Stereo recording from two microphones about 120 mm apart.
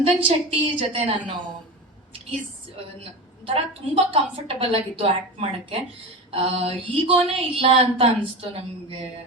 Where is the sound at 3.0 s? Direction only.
55° right (ahead or behind).